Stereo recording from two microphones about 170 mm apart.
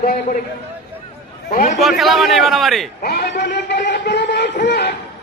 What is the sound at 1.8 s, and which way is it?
A man's voice, centre (ahead or behind).